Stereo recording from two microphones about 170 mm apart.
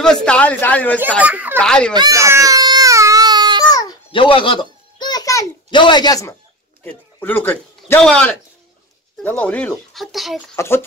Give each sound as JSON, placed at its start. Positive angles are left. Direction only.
{"t": 0.0, "sound": "speech", "side_deg": 5}
{"t": 1.2, "sound": "speech", "side_deg": -10}
{"t": 1.6, "sound": "a child's voice", "side_deg": 5}
{"t": 2.0, "sound": "baby cry", "side_deg": -20}
{"t": 3.6, "sound": "babbling", "side_deg": 20}
{"t": 6.8, "sound": "a man's voice", "side_deg": 10}
{"t": 10.5, "sound": "speech", "side_deg": 15}